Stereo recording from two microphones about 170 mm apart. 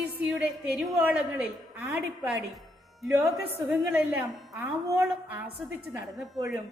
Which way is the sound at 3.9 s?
10° right (ahead or behind).